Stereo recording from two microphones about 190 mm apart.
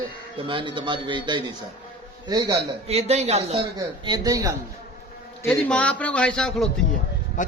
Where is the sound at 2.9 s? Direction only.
35° right (ahead or behind).